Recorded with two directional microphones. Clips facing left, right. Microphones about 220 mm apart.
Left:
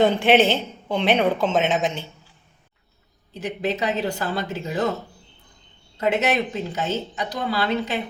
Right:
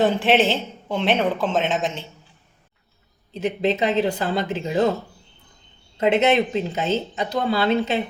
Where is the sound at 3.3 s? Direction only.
20° right (ahead or behind).